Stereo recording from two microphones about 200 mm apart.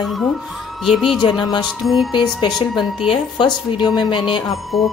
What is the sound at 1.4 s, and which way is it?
Speech, 20° left (ahead or behind).